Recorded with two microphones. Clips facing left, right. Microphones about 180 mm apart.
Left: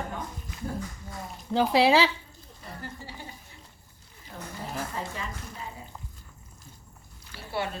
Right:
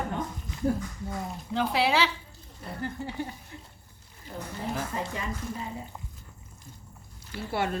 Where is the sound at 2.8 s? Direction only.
55° right (ahead or behind).